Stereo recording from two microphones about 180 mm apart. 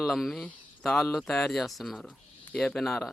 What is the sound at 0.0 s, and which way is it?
Speech, centre (ahead or behind).